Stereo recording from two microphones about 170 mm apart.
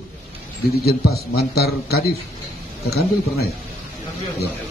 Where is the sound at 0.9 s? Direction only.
65° left (ahead or behind).